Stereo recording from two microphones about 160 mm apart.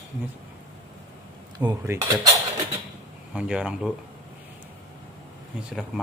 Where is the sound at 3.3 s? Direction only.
10° right (ahead or behind).